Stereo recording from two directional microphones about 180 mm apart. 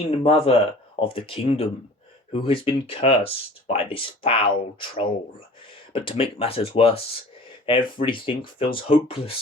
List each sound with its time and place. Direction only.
0.0 s speech: 30° left (ahead or behind)